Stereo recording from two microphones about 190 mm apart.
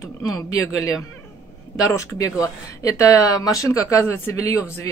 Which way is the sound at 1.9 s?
15° left (ahead or behind).